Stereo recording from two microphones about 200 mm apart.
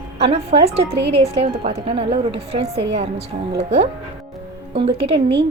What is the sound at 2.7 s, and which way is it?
Speech, 60° right (ahead or behind).